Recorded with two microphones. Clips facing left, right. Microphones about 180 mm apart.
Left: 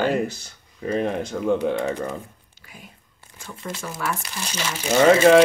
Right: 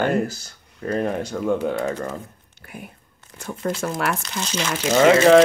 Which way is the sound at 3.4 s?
70° right (ahead or behind).